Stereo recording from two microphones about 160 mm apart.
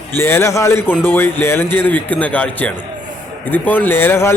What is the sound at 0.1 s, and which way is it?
A man's voice, 15° left (ahead or behind).